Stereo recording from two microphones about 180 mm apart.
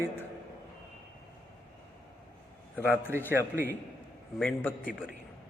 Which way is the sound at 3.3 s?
10° right (ahead or behind).